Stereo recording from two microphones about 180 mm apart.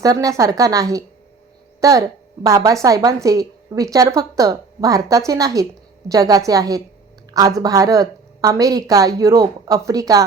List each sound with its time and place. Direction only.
0.0 s a woman's voice: 20° right (ahead or behind)